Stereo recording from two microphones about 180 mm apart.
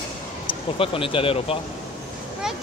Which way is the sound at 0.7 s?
30° left (ahead or behind).